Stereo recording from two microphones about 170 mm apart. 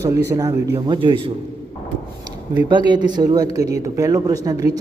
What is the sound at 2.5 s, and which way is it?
A man's voice, 25° right (ahead or behind).